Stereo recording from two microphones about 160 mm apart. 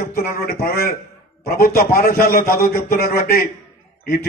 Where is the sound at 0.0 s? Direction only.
70° left (ahead or behind).